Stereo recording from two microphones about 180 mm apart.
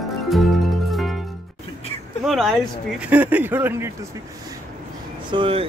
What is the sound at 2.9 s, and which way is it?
Speech, 10° right (ahead or behind).